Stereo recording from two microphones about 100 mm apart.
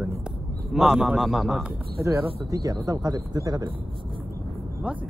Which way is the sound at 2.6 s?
40° right (ahead or behind).